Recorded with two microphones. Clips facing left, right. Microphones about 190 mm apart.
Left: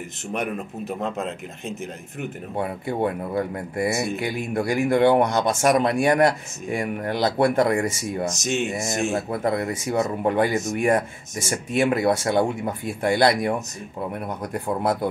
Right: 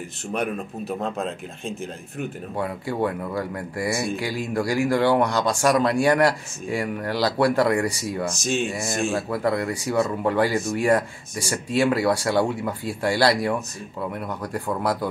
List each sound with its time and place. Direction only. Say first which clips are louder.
0.3 s speech: right 1 dB; 20° left (ahead or behind)